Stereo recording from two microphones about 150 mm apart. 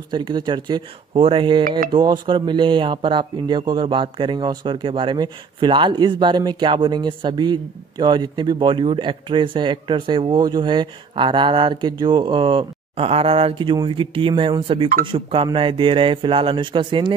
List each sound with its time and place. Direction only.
0.1 s speech: 30° right (ahead or behind)